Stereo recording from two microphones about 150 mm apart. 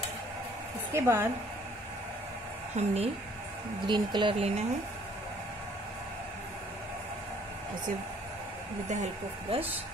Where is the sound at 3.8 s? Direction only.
30° right (ahead or behind).